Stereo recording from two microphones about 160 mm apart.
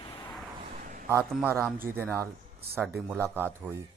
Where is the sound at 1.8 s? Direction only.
15° right (ahead or behind).